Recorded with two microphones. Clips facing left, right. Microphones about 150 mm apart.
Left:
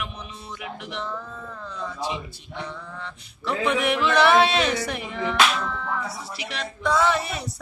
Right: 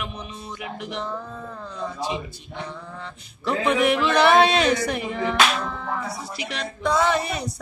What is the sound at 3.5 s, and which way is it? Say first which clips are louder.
A man's voice: right 3 dB; 40° right (ahead or behind).